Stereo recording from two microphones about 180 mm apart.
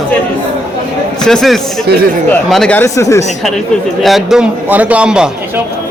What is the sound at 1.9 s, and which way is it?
Speech, 65° right (ahead or behind).